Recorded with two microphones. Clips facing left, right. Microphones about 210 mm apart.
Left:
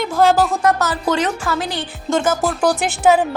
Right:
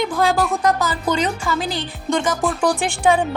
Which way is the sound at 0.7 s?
75° left (ahead or behind).